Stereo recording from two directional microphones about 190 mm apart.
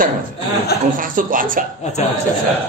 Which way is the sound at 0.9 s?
45° right (ahead or behind).